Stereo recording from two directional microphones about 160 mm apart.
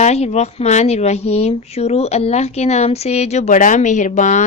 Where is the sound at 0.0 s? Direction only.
45° left (ahead or behind).